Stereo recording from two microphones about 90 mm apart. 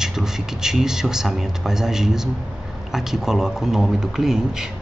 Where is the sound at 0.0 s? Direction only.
5° right (ahead or behind).